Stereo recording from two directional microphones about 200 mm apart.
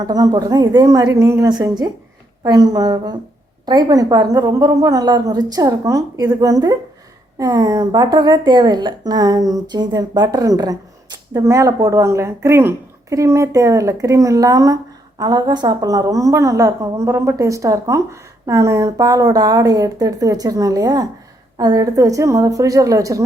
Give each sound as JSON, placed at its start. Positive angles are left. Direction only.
{"t": 0.0, "sound": "a woman's voice", "side_deg": -20}